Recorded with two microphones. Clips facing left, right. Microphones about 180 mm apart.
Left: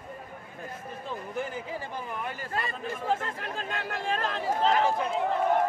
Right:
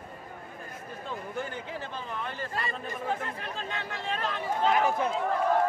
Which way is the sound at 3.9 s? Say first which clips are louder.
Left 3 dB; 45° left (ahead or behind).